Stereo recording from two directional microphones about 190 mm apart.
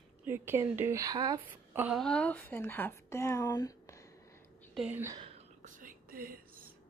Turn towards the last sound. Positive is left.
turn(degrees=-50)  # may be behind; listen again after turning